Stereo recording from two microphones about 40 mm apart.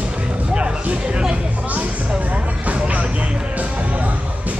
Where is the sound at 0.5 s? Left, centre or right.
Right.